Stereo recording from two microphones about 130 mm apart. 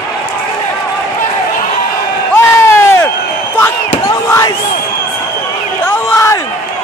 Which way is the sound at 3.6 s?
20° left (ahead or behind).